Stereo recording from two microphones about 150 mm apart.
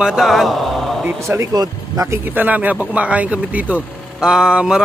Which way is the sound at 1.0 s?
15° right (ahead or behind).